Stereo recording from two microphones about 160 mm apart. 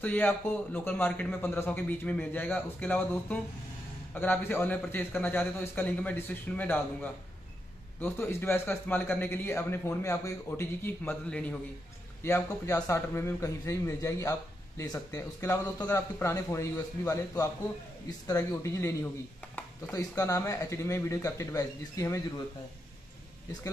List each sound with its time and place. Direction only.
0.0 s a man's voice: 10° left (ahead or behind)